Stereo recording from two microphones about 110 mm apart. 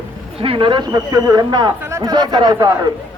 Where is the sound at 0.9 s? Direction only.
35° right (ahead or behind).